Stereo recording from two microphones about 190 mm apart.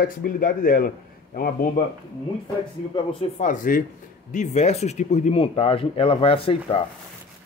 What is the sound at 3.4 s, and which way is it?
A man's voice, 45° left (ahead or behind).